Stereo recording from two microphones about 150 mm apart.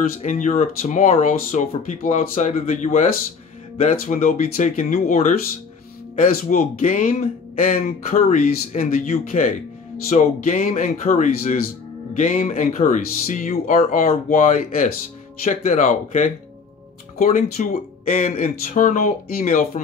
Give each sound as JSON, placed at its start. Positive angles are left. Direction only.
{"t": 0.2, "sound": "speech", "side_deg": 55}